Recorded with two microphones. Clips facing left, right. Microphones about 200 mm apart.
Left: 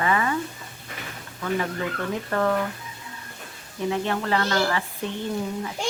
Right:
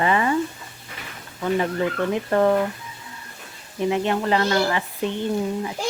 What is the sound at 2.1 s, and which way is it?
Speech, 20° right (ahead or behind).